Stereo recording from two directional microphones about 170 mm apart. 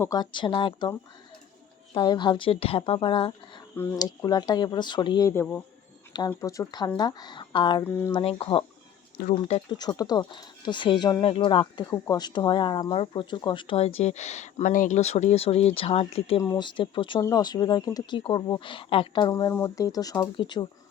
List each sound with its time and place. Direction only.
0.0 s a woman's voice: 20° left (ahead or behind)
5.3 s speech: 10° left (ahead or behind)
7.9 s speech: 15° left (ahead or behind)
8.1 s a woman's voice: 35° left (ahead or behind)
9.7 s speech: 25° left (ahead or behind)
16.4 s speech: 25° left (ahead or behind)